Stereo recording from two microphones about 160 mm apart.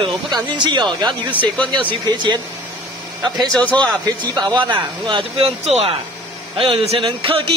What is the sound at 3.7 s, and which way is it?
Speech, 25° right (ahead or behind).